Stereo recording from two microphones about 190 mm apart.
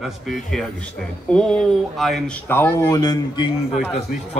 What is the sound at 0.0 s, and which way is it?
Speech, centre (ahead or behind).